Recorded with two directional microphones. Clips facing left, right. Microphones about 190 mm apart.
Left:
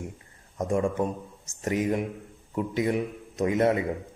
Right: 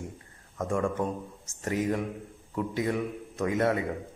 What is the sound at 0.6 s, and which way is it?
A man's voice, 20° left (ahead or behind).